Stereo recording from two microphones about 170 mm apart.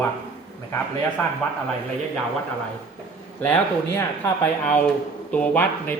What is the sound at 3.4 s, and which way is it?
Speech, 10° left (ahead or behind).